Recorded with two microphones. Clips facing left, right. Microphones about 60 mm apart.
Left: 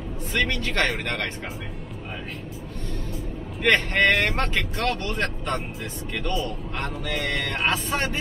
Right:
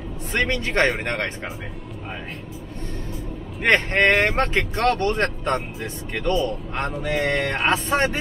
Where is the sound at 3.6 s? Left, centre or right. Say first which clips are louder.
Right 2 dB; right.